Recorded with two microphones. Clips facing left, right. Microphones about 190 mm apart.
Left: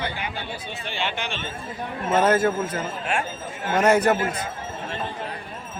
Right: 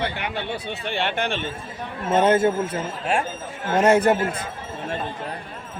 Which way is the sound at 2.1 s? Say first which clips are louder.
Right 2 dB; 30° right (ahead or behind).